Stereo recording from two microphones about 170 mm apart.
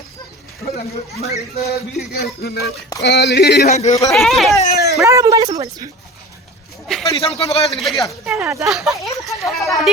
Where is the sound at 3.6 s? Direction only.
40° left (ahead or behind).